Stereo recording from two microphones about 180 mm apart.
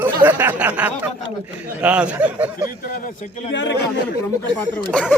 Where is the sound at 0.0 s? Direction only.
10° right (ahead or behind).